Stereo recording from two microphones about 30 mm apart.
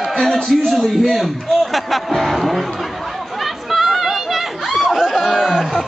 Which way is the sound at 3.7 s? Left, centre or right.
Centre.